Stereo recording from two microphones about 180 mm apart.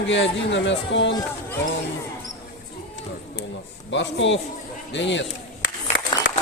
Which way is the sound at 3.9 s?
85° left.